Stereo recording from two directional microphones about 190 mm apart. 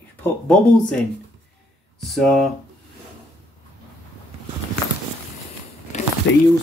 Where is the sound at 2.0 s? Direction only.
Centre (ahead or behind).